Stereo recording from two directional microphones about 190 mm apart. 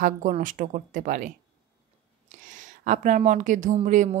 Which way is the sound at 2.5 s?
40° right (ahead or behind).